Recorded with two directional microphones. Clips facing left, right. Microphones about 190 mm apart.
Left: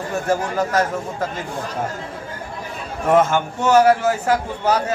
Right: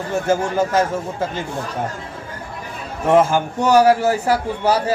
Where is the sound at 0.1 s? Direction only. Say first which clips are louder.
Right 3 dB; 25° right (ahead or behind).